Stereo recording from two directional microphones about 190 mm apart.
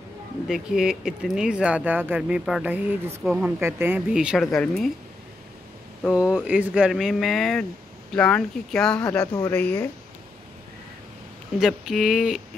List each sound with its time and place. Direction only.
0.5 s speech: centre (ahead or behind)
6.0 s speech: 5° right (ahead or behind)
9.2 s a woman's voice: 20° left (ahead or behind)
9.6 s a woman's voice: 5° left (ahead or behind)
11.6 s speech: centre (ahead or behind)